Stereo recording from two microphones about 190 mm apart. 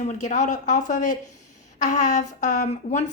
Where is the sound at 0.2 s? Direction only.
40° left (ahead or behind).